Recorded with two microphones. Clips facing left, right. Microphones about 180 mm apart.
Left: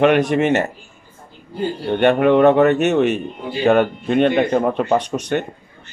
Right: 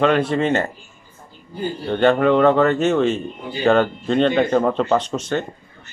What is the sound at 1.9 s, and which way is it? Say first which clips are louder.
Speech: left 1 dB; 20° left (ahead or behind).